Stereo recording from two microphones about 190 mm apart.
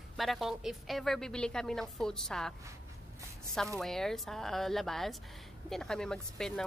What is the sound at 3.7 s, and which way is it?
Speech, centre (ahead or behind).